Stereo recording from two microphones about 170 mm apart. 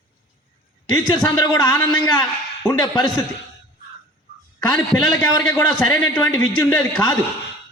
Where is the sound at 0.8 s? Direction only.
25° left (ahead or behind).